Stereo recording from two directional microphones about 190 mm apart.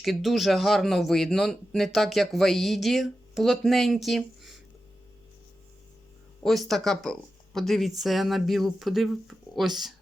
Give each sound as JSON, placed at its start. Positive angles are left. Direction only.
{"t": 0.0, "sound": "speech", "side_deg": 0}
{"t": 6.4, "sound": "speech", "side_deg": 0}